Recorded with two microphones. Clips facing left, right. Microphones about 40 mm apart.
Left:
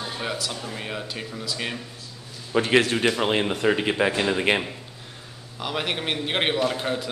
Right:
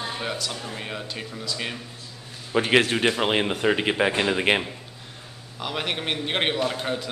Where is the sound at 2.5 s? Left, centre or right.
Centre.